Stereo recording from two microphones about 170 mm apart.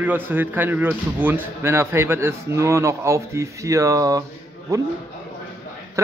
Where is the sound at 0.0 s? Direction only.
10° right (ahead or behind).